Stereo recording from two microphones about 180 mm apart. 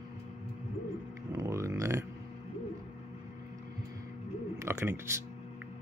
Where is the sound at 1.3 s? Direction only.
15° right (ahead or behind).